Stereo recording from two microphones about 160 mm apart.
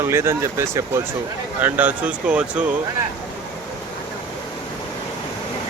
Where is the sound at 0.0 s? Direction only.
15° right (ahead or behind).